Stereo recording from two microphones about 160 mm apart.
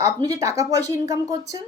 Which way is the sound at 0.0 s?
20° right (ahead or behind).